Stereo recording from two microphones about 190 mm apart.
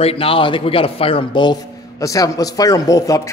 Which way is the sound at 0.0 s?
30° left (ahead or behind).